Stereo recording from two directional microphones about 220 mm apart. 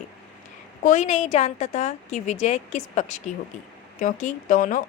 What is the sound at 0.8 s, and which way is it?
A woman's voice, 35° left (ahead or behind).